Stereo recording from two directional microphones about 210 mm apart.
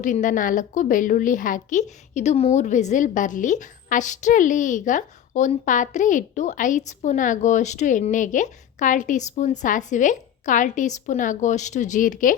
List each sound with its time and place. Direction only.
0.0 s a woman's voice: 35° left (ahead or behind)